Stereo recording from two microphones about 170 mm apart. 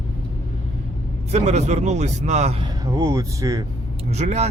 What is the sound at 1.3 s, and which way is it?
A man's voice, 40° right (ahead or behind).